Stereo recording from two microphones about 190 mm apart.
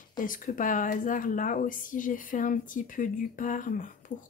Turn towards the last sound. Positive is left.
turn(degrees=45)  # may be behind; listen again after turning